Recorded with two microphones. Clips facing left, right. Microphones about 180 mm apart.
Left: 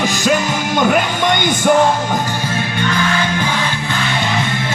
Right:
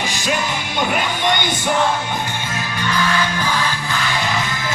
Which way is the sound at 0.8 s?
50° left (ahead or behind).